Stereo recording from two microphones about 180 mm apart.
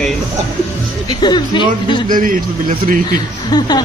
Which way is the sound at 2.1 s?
50° right (ahead or behind).